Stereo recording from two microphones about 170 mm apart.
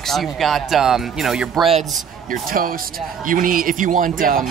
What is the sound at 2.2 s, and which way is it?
Speech, 55° right (ahead or behind).